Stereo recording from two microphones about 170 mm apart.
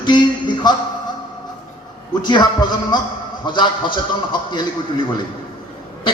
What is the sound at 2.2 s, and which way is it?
Speech, 25° left (ahead or behind).